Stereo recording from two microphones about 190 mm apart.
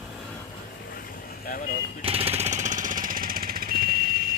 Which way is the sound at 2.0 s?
30° right (ahead or behind).